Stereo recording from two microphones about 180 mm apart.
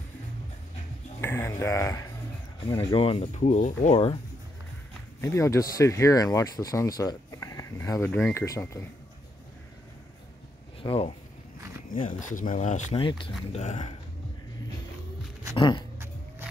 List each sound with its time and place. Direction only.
1.2 s speech: 15° left (ahead or behind)
2.7 s speech: 30° left (ahead or behind)
5.2 s speech: 15° left (ahead or behind)
10.8 s speech: 30° left (ahead or behind)
11.9 s speech: 45° left (ahead or behind)
15.5 s speech: 25° left (ahead or behind)